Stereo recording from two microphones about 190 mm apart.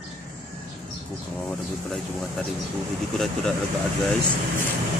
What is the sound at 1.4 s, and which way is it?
Speech, 5° left (ahead or behind).